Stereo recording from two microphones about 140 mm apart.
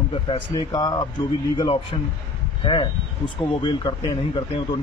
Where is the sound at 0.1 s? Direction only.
40° left (ahead or behind).